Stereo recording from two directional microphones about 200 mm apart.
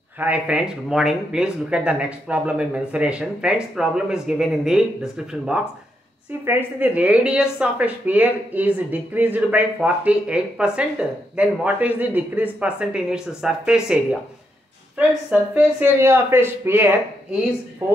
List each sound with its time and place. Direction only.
0.2 s speech: 5° right (ahead or behind)
15.5 s speech: 10° right (ahead or behind)